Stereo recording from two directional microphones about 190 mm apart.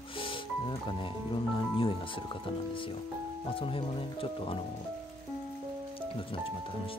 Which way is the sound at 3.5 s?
30° left (ahead or behind).